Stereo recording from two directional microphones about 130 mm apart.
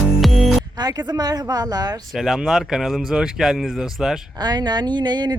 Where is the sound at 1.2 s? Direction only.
30° right (ahead or behind).